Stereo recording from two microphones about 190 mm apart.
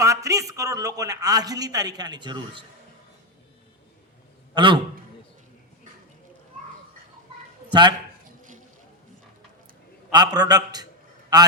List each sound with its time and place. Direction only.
0.0 s a man's voice: 15° right (ahead or behind)
4.5 s a man's voice: 25° right (ahead or behind)
7.7 s a man's voice: 25° right (ahead or behind)
10.1 s a man's voice: 20° right (ahead or behind)